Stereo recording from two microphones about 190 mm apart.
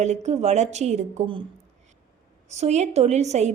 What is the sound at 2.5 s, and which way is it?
A woman's voice, 35° right (ahead or behind).